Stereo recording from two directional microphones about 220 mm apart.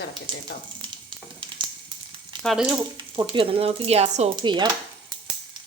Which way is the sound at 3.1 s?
25° right (ahead or behind).